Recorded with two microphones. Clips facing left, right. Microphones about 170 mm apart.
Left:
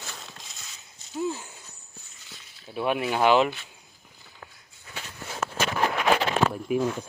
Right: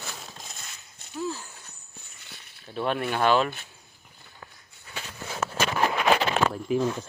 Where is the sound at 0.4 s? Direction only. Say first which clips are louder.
Right 3 dB; 55° right (ahead or behind).